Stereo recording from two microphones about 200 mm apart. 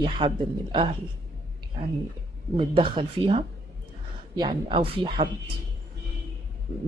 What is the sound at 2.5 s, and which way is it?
Speech, 25° right (ahead or behind).